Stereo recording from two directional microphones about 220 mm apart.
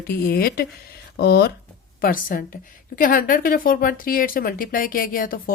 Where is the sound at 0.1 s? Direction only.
45° left (ahead or behind).